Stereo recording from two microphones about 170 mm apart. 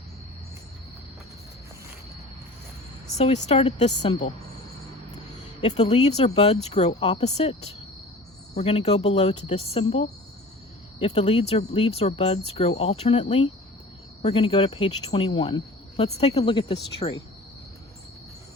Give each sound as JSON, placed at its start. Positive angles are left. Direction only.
{"t": 3.2, "sound": "speech", "side_deg": 40}
{"t": 5.6, "sound": "speech", "side_deg": 40}